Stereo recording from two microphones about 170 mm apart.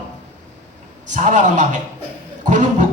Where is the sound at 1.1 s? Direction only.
45° right (ahead or behind).